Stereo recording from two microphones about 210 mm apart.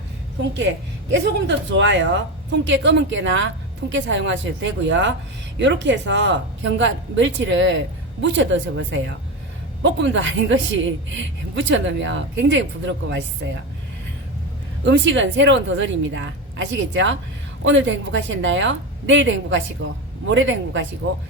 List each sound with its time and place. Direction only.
1.1 s a woman's voice: 60° right (ahead or behind)
14.8 s a woman's voice: 60° right (ahead or behind)